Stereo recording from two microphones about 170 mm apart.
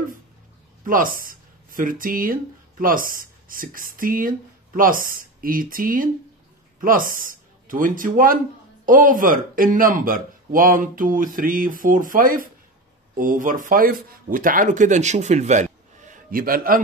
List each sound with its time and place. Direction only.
0.8 s speech: 55° right (ahead or behind)